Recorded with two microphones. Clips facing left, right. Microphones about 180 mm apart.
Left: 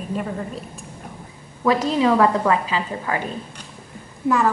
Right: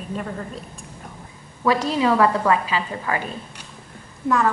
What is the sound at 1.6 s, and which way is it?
Speech, 15° left (ahead or behind).